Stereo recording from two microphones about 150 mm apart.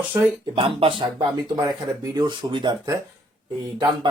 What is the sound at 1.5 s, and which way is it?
Speech, 25° right (ahead or behind).